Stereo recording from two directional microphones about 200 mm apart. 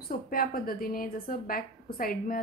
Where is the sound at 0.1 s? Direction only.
45° left (ahead or behind).